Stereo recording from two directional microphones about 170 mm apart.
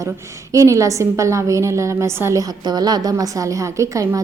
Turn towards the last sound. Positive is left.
turn(degrees=-20)  # may be behind; listen again after turning